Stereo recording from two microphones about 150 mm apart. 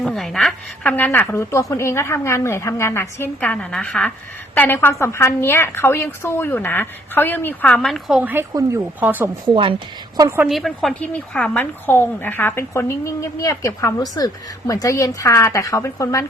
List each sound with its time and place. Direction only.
0.0 s a woman's voice: centre (ahead or behind)
8.3 s speech: 15° right (ahead or behind)
9.5 s a woman's voice: 35° right (ahead or behind)
10.2 s a woman's voice: 20° right (ahead or behind)
10.4 s a woman's voice: centre (ahead or behind); by 16.2 s 20° left (ahead or behind)